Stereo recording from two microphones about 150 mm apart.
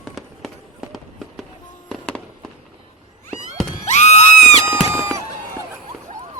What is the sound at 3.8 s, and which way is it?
Music, 50° left (ahead or behind).